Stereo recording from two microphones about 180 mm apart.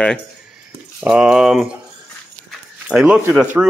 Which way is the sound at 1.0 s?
5° right (ahead or behind).